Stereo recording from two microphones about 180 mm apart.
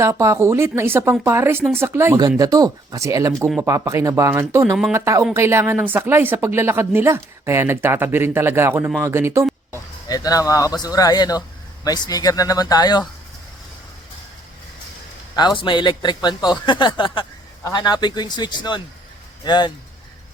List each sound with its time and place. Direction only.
0.0 s a woman's voice: 15° right (ahead or behind)
9.7 s speech: 20° left (ahead or behind)
15.4 s a man's voice: 25° left (ahead or behind)